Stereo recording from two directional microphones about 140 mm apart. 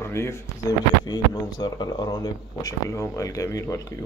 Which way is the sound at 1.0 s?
30° left (ahead or behind).